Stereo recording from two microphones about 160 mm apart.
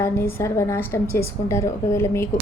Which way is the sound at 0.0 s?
15° left (ahead or behind).